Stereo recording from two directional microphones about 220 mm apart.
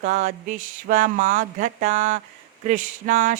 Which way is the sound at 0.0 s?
35° right (ahead or behind).